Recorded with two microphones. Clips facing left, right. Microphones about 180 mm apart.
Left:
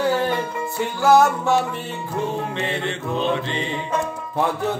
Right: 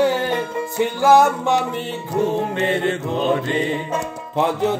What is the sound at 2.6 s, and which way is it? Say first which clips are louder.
Mantra: right 6 dB; 45° right (ahead or behind).